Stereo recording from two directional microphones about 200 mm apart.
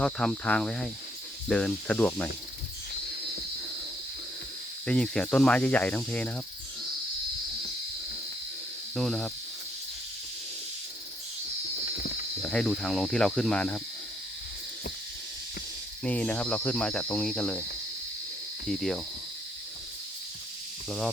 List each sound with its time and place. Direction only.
0.0 s speech: 5° left (ahead or behind)
4.9 s speech: 5° left (ahead or behind)
9.0 s speech: 5° left (ahead or behind)
12.4 s speech: 5° left (ahead or behind)
16.0 s speech: 5° left (ahead or behind)
18.7 s speech: centre (ahead or behind)